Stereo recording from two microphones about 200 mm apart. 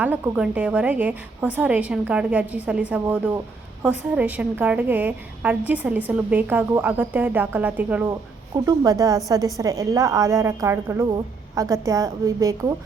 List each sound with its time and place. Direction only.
0.0 s a woman's voice: 5° right (ahead or behind)
8.5 s a woman's voice: 20° right (ahead or behind)